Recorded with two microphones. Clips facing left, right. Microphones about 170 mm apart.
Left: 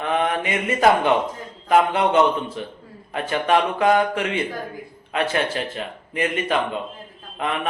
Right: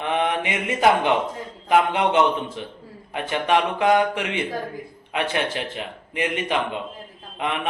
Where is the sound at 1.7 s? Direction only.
15° right (ahead or behind).